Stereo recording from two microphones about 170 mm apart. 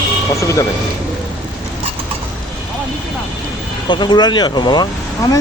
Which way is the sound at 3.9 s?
25° left (ahead or behind).